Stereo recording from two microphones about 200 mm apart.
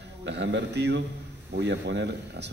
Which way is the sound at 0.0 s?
60° right (ahead or behind).